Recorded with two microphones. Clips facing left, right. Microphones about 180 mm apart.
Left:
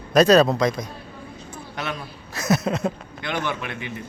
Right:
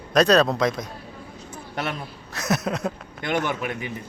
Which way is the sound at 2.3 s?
Centre (ahead or behind).